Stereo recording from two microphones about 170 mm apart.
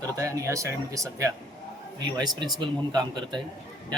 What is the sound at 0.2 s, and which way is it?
Speech, 20° right (ahead or behind).